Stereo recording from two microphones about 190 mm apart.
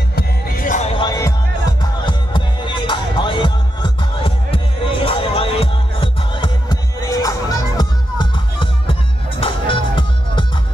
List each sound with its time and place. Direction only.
0.1 s music: 50° left (ahead or behind)
0.9 s music: 20° left (ahead or behind)